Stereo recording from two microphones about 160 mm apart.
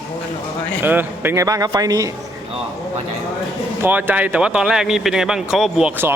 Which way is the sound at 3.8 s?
10° right (ahead or behind).